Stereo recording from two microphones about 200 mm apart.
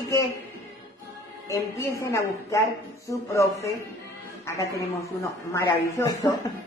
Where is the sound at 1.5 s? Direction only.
15° left (ahead or behind).